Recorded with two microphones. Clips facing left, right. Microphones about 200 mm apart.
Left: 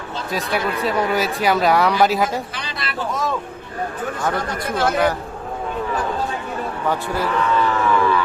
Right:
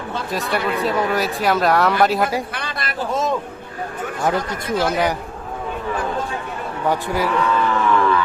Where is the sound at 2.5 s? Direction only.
55° right (ahead or behind).